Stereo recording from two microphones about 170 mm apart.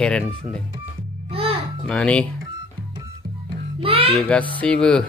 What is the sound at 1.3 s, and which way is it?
Music, 35° right (ahead or behind).